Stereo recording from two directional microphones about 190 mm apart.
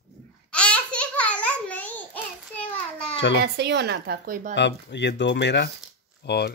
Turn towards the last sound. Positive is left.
turn(degrees=60)  # may be behind; listen again after turning